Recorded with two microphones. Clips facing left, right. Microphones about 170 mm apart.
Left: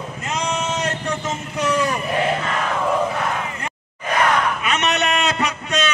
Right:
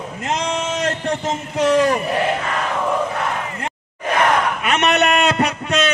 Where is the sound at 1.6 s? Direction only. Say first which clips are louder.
Right 6 dB; 90° right.